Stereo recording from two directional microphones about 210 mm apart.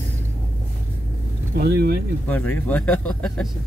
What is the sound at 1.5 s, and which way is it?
Speech, 50° right (ahead or behind).